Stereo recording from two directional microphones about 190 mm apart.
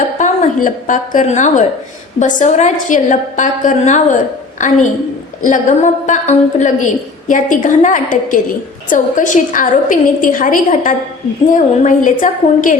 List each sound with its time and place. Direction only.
0.2 s a woman's voice: 45° left (ahead or behind)